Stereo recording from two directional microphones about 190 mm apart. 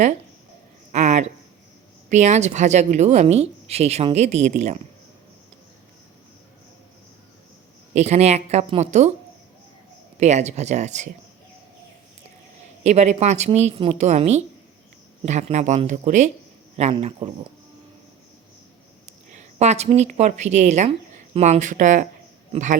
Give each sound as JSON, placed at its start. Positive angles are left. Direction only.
{"t": 0.9, "sound": "a sound", "side_deg": -40}
{"t": 2.0, "sound": "speech", "side_deg": -40}
{"t": 7.9, "sound": "speech", "side_deg": -35}
{"t": 10.2, "sound": "speech", "side_deg": -35}
{"t": 12.8, "sound": "speech", "side_deg": -35}
{"t": 19.3, "sound": "a woman's voice", "side_deg": -35}